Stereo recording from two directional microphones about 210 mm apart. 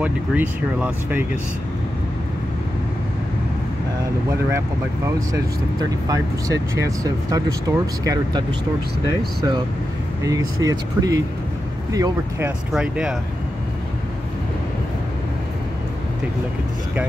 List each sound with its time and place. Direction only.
0.0 s speech: 5° right (ahead or behind)
5.3 s speech: 15° right (ahead or behind)
10.6 s speech: 15° right (ahead or behind)